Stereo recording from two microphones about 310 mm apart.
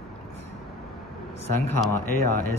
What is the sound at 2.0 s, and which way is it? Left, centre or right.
Speech, left.